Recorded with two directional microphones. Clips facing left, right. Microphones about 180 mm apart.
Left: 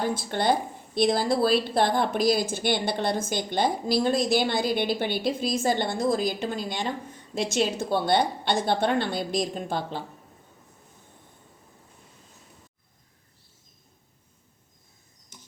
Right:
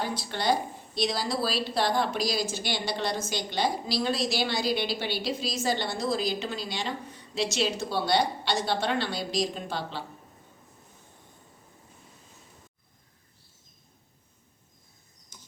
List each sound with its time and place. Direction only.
0.1 s a woman's voice: 50° left (ahead or behind)